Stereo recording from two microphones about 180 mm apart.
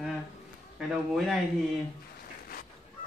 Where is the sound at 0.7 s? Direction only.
Centre (ahead or behind).